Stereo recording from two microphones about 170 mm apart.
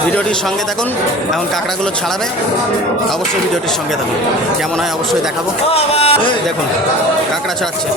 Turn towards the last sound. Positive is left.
turn(degrees=35)  # may be behind; listen again after turning